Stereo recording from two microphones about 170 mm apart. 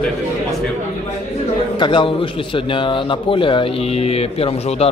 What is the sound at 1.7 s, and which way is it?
A man's voice, 30° left (ahead or behind).